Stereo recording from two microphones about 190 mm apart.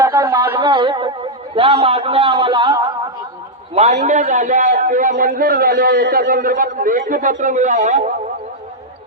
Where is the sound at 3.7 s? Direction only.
35° right (ahead or behind).